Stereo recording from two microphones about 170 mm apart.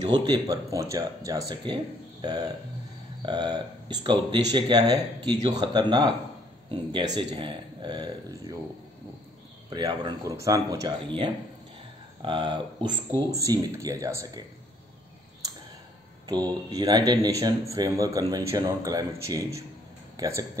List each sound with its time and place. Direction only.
0.0 s speech: 25° right (ahead or behind)
9.7 s speech: 25° right (ahead or behind)
16.7 s speech: 25° right (ahead or behind)